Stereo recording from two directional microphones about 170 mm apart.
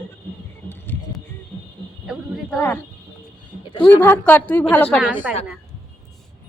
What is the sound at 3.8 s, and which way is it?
A woman's voice, 10° left (ahead or behind).